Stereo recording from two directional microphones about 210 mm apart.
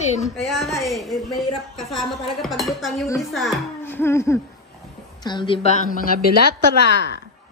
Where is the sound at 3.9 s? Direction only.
10° left (ahead or behind).